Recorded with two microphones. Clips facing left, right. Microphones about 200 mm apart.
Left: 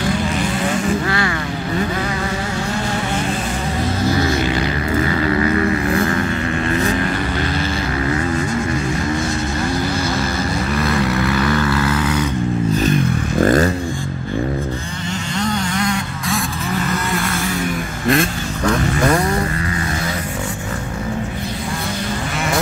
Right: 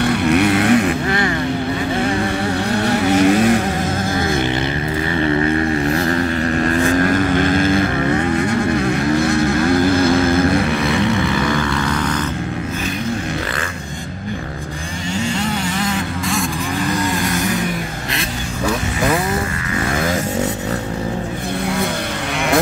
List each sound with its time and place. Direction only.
0.0 s vehicle: 65° right (ahead or behind)
3.1 s vehicle: 70° right (ahead or behind)
4.0 s vehicle: 50° right (ahead or behind)
7.5 s boat: 50° right (ahead or behind)
10.0 s vehicle: 55° right (ahead or behind)
10.8 s vehicle: centre (ahead or behind)
13.4 s vehicle: 45° left (ahead or behind)
15.3 s vehicle: 5° right (ahead or behind)
18.7 s vehicle: 5° right (ahead or behind)